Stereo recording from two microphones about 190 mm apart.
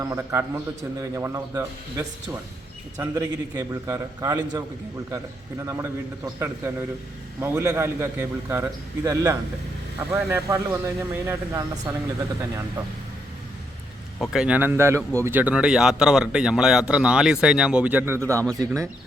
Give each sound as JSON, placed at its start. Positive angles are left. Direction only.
{"t": 0.0, "sound": "a man's voice", "side_deg": -15}
{"t": 14.2, "sound": "a man's voice", "side_deg": -5}